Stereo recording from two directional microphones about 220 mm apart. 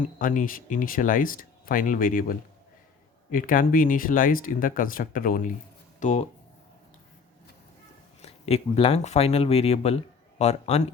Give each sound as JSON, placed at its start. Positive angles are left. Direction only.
{"t": 0.0, "sound": "speech", "side_deg": 40}
{"t": 3.3, "sound": "speech", "side_deg": 40}
{"t": 8.2, "sound": "speech", "side_deg": 30}